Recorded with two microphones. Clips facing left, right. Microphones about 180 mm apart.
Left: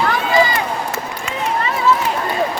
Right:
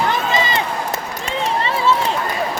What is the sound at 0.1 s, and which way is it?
Run, 20° right (ahead or behind).